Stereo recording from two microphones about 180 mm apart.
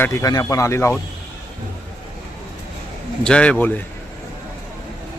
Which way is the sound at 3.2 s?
5° left (ahead or behind).